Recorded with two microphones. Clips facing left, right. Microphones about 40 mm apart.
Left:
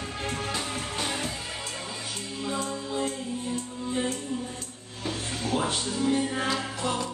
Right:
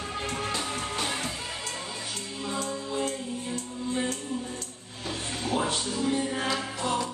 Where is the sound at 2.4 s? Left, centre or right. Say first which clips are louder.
Left 1 dB; centre.